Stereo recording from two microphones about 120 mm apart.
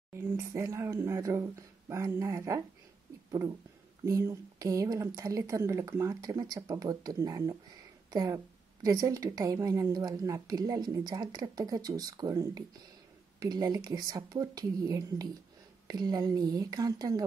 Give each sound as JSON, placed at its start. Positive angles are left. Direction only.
{"t": 0.1, "sound": "a woman's voice", "side_deg": -25}